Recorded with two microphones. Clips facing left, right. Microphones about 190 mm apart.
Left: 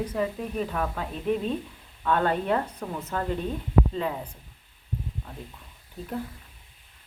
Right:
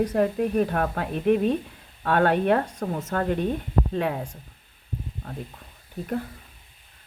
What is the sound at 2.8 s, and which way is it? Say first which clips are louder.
Speech: right 5 dB; 45° right (ahead or behind).